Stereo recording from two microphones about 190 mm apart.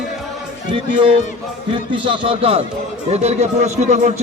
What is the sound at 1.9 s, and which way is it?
A man's voice, 25° right (ahead or behind).